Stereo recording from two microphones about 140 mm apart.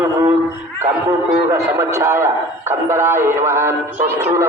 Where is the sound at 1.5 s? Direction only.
20° right (ahead or behind).